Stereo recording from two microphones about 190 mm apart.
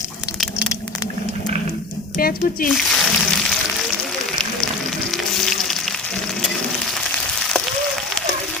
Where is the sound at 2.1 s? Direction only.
50° left (ahead or behind).